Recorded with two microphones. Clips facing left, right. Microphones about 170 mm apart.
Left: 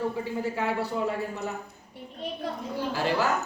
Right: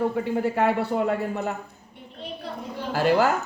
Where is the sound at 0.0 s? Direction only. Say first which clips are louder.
Right 5 dB; 60° right (ahead or behind).